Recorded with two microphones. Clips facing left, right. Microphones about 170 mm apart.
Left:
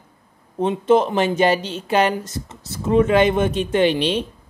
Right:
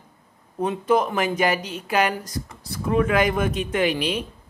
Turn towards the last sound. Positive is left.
turn(degrees=25)  # may be behind; listen again after turning